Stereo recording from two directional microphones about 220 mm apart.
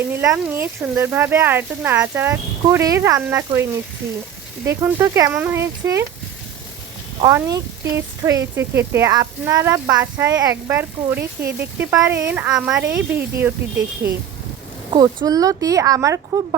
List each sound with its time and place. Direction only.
0.0 s a woman's voice: 10° right (ahead or behind)
7.2 s a woman's voice: 15° right (ahead or behind)
14.8 s a woman's voice: 20° right (ahead or behind)